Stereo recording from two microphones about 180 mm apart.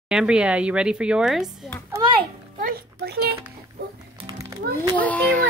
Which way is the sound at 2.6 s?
60° right (ahead or behind).